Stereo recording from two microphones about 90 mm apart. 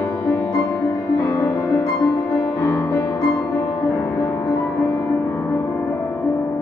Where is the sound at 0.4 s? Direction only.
25° left (ahead or behind).